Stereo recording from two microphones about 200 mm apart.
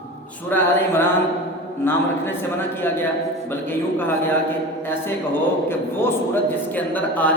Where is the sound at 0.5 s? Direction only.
10° left (ahead or behind).